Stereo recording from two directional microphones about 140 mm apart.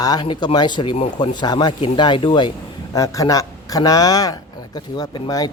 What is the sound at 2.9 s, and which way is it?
A man's voice, 25° left (ahead or behind).